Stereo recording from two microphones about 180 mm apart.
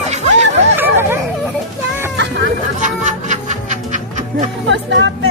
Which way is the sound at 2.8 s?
45° right (ahead or behind).